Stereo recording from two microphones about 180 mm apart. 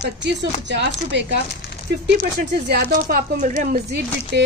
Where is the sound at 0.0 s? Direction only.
75° right (ahead or behind).